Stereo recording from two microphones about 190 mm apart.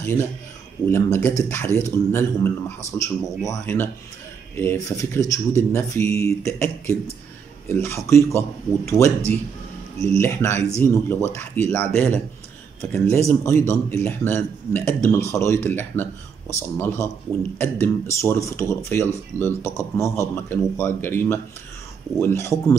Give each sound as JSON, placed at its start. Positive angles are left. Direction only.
{"t": 0.8, "sound": "a man's voice", "side_deg": 15}
{"t": 13.3, "sound": "a man's voice", "side_deg": 15}